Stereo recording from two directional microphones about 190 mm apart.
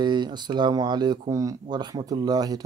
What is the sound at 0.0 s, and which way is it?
Speech, 25° right (ahead or behind).